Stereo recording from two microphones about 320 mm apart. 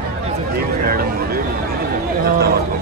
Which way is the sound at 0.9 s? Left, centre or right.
Right.